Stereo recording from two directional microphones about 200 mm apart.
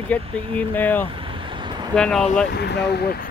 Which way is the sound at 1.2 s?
25° right (ahead or behind).